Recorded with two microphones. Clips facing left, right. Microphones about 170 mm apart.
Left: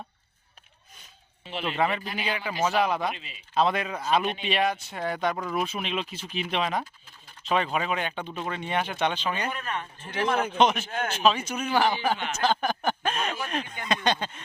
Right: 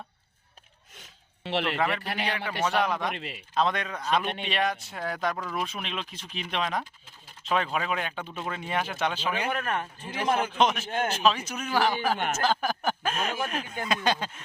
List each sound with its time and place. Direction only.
1.5 s a man's voice: 75° right (ahead or behind)
2.6 s speech: 5° left (ahead or behind)
3.2 s a man's voice: 65° right (ahead or behind)
3.5 s speech: 5° left (ahead or behind)
9.5 s speech: 55° right (ahead or behind)
10.1 s speech: centre (ahead or behind)
12.1 s speech: 50° right (ahead or behind)
12.4 s speech: 5° right (ahead or behind)